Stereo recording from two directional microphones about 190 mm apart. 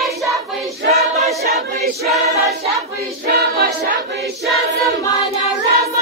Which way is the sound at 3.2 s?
55° right (ahead or behind).